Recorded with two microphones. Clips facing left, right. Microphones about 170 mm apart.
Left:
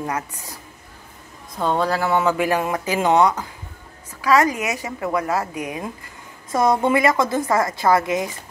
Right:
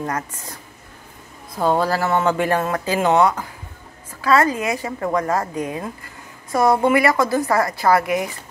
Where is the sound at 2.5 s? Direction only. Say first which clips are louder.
Right 1 dB; 15° left (ahead or behind).